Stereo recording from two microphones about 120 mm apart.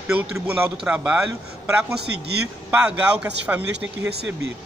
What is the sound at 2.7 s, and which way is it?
Speech, 10° right (ahead or behind).